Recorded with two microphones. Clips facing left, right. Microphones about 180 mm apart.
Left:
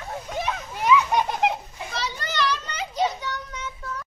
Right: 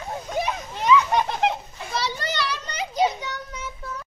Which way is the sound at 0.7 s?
10° left (ahead or behind).